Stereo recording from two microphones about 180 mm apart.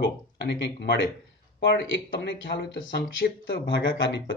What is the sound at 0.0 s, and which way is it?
Speech, 75° left (ahead or behind).